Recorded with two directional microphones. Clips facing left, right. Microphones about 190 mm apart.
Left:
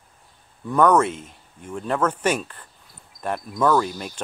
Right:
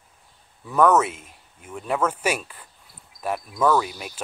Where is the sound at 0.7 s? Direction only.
5° right (ahead or behind).